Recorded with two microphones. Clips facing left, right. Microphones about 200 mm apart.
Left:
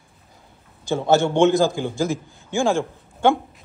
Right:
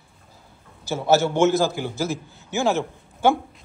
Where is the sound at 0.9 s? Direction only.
15° left (ahead or behind).